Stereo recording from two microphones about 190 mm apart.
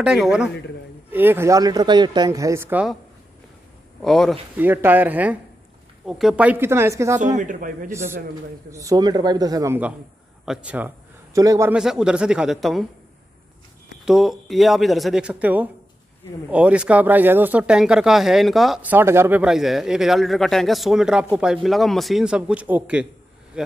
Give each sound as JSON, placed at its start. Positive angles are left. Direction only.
{"t": 0.0, "sound": "speech", "side_deg": -5}
{"t": 4.0, "sound": "speech", "side_deg": 0}
{"t": 4.6, "sound": "speech", "side_deg": -10}
{"t": 7.3, "sound": "a man's voice", "side_deg": -45}
{"t": 7.9, "sound": "speech", "side_deg": -15}
{"t": 10.4, "sound": "speech", "side_deg": -5}
{"t": 11.7, "sound": "speech", "side_deg": -5}
{"t": 14.0, "sound": "speech", "side_deg": 0}